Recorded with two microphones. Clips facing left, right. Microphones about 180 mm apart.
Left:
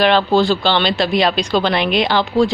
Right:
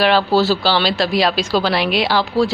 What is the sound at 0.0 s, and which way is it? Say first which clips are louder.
Speech: left 1 dB; 5° right (ahead or behind).